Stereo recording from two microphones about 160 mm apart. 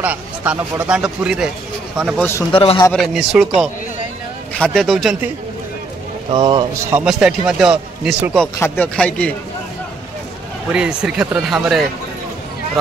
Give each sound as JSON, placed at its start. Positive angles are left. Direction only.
{"t": 0.0, "sound": "a man's voice", "side_deg": -10}
{"t": 2.1, "sound": "speech", "side_deg": 15}
{"t": 2.5, "sound": "a man's voice", "side_deg": 35}
{"t": 2.9, "sound": "a man's voice", "side_deg": 0}
{"t": 4.6, "sound": "a man's voice", "side_deg": 5}
{"t": 6.3, "sound": "speech", "side_deg": -30}
{"t": 6.8, "sound": "a man's voice", "side_deg": -10}
{"t": 8.5, "sound": "speech", "side_deg": 15}
{"t": 10.7, "sound": "a man's voice", "side_deg": -5}